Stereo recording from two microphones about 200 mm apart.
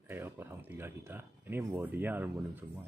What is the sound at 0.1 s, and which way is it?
Speech, 10° right (ahead or behind).